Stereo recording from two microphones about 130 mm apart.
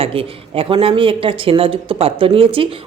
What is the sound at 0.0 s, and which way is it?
Speech, 45° right (ahead or behind).